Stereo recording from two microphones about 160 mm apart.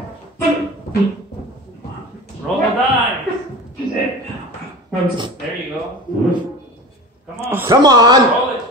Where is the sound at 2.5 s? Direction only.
5° left (ahead or behind).